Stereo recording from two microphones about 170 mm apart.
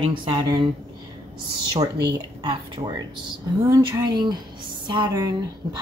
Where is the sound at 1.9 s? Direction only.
80° right.